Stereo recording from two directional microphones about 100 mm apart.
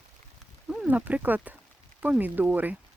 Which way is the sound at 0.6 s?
15° right (ahead or behind).